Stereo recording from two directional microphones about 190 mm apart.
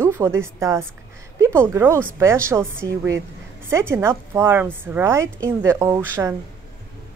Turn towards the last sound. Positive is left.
turn(degrees=-15)  # may be behind; listen again after turning